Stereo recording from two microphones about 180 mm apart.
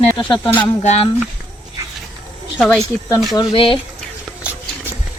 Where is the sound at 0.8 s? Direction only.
35° left (ahead or behind).